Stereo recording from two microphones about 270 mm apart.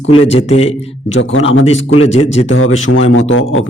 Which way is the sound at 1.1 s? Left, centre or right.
Left.